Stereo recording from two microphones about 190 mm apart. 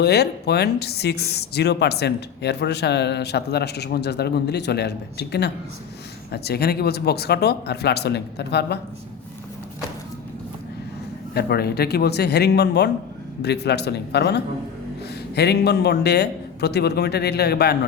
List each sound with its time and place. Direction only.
0.0 s speech: 60° left (ahead or behind)
11.3 s speech: 55° left (ahead or behind)